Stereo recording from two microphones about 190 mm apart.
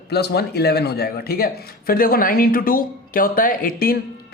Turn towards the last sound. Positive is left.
turn(degrees=50)  # may be behind; listen again after turning